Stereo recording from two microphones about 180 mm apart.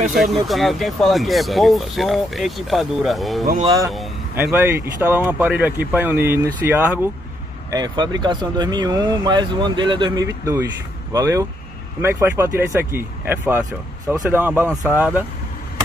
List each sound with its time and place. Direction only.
0.1 s speech: centre (ahead or behind)
3.6 s speech: 20° right (ahead or behind)
7.7 s speech: 25° right (ahead or behind); by 15.2 s 5° right (ahead or behind)